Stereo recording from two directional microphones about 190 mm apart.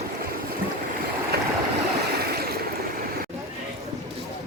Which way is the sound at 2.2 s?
55° right (ahead or behind).